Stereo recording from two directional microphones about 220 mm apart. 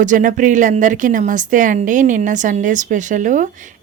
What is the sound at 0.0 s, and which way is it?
A woman's voice, 35° right (ahead or behind).